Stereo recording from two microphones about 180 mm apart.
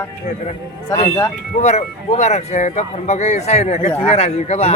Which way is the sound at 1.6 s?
40° left (ahead or behind).